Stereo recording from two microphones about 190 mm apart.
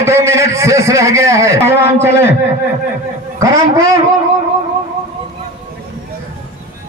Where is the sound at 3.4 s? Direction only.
15° right (ahead or behind).